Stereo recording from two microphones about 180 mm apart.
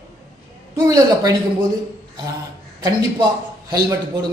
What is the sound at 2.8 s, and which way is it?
A man's voice, 20° right (ahead or behind).